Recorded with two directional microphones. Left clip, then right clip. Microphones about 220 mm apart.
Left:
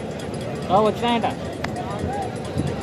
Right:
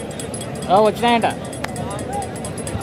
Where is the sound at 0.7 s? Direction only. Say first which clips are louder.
Right 5 dB; 40° right (ahead or behind).